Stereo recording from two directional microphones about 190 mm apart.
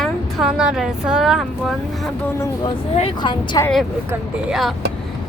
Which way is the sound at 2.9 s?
30° left (ahead or behind).